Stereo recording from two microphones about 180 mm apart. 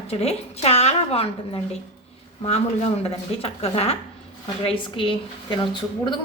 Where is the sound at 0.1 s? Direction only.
35° left (ahead or behind).